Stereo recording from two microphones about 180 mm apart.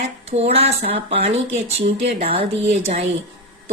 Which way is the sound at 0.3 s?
35° right (ahead or behind).